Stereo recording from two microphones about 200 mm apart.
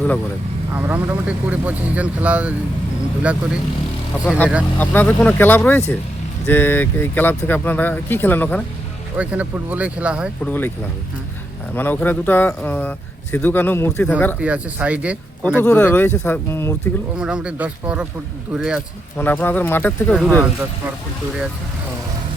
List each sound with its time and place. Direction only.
0.7 s speech: 10° right (ahead or behind)
4.3 s speech: 10° left (ahead or behind)
9.1 s speech: 5° right (ahead or behind)
10.4 s speech: 10° left (ahead or behind)
11.7 s speech: 10° left (ahead or behind)
14.4 s speech: 5° right (ahead or behind)
15.5 s speech: 10° left (ahead or behind)
17.2 s speech: 5° right (ahead or behind)
19.1 s speech: 10° left (ahead or behind)
20.1 s speech: centre (ahead or behind)